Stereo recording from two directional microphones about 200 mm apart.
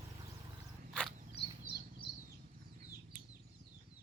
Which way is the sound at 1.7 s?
50° right (ahead or behind).